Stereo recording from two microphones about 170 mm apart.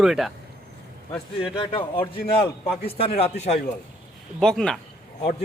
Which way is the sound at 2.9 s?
35° left (ahead or behind).